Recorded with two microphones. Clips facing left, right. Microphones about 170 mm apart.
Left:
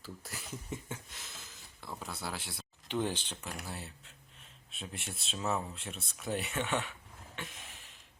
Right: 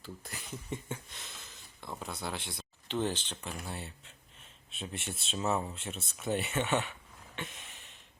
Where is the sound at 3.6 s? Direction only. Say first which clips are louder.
Right 2 dB; centre (ahead or behind).